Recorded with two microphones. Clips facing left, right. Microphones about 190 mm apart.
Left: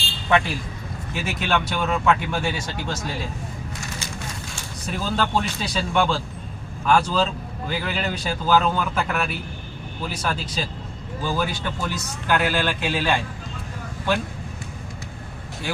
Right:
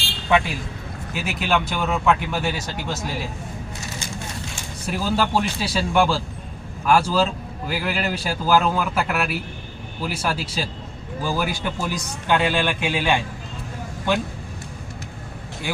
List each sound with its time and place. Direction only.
0.3 s speech: 15° right (ahead or behind)
4.9 s a man's voice: 10° right (ahead or behind)